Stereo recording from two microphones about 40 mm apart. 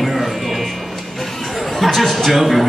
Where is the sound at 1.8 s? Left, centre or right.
Centre.